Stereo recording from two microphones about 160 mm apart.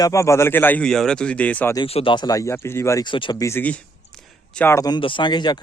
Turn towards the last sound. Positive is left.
turn(degrees=25)  # may be behind; listen again after turning